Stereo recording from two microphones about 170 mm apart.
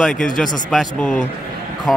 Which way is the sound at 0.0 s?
5° left (ahead or behind).